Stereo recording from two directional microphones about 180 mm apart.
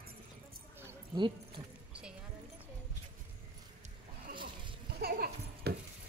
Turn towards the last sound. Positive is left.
turn(degrees=-55)  # may be behind; listen again after turning